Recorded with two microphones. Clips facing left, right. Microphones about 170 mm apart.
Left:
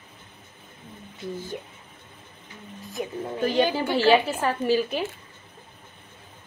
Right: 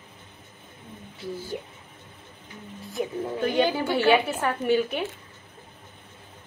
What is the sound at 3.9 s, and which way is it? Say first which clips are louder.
Speech: left 2 dB; 25° left (ahead or behind).